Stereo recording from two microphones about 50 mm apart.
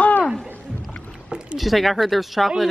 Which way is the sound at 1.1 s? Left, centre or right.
Centre.